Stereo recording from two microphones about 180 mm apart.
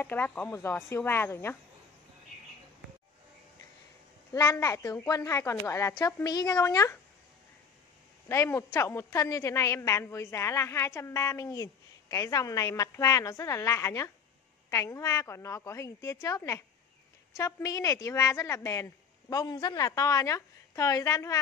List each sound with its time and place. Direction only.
0.0 s a woman's voice: 10° left (ahead or behind)
4.3 s a woman's voice: 20° left (ahead or behind)
8.3 s a woman's voice: 15° left (ahead or behind)